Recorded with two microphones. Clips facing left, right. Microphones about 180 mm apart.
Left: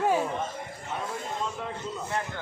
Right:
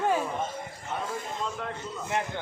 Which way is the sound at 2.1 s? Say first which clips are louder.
Right 4 dB; 20° right (ahead or behind).